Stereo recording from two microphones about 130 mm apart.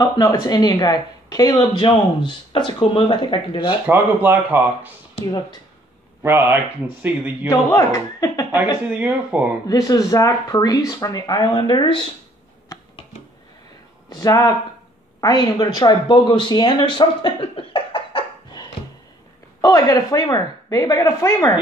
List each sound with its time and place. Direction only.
0.0 s speech: 30° left (ahead or behind)
3.8 s speech: 15° right (ahead or behind)
6.2 s speech: 20° right (ahead or behind)
7.4 s speech: 25° left (ahead or behind)
8.9 s speech: 10° right (ahead or behind)
9.7 s speech: 30° left (ahead or behind)
14.0 s speech: 30° left (ahead or behind)